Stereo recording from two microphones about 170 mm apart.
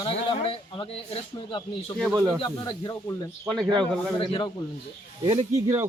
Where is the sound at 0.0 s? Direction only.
30° left (ahead or behind).